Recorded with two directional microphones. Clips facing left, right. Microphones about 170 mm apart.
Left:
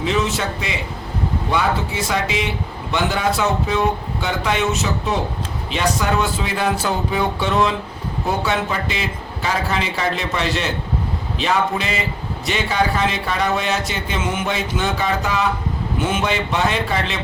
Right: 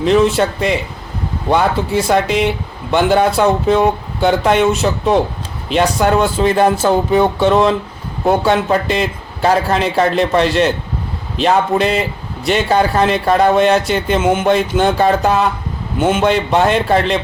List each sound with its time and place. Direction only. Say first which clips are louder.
0.3 s speech: right 9 dB; 55° right (ahead or behind)